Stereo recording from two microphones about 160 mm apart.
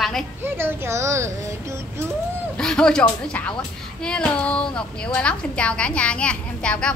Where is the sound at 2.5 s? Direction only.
5° left (ahead or behind).